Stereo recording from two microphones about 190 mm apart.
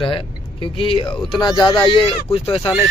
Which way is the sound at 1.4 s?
25° left (ahead or behind).